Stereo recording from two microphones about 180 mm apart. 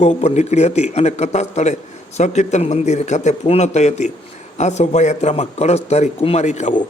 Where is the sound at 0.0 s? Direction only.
35° left (ahead or behind).